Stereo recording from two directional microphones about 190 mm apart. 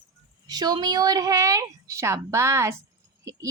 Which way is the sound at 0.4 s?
20° right (ahead or behind).